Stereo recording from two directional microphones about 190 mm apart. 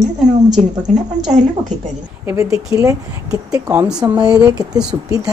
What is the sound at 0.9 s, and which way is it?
Speech, 40° right (ahead or behind).